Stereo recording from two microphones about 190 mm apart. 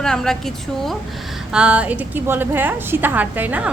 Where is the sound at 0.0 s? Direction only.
5° left (ahead or behind).